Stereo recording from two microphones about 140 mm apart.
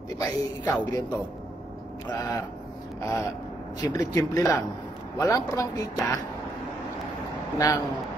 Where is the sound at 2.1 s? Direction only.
25° left (ahead or behind).